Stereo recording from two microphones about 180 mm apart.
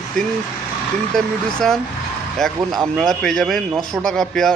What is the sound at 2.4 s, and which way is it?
A man's voice, 5° left (ahead or behind).